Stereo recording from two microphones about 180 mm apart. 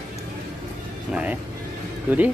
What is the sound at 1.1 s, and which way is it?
Vehicle, 5° right (ahead or behind).